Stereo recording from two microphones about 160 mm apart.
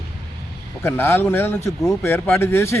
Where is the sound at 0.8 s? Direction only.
15° left (ahead or behind).